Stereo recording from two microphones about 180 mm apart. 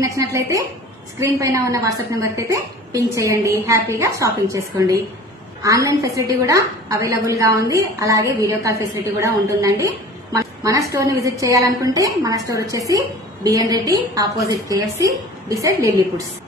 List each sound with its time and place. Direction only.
0.0 s a woman's voice: 15° right (ahead or behind)